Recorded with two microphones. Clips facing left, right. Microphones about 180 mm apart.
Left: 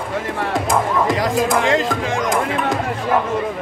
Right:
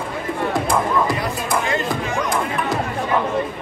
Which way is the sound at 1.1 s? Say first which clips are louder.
Left 5 dB; 90° left.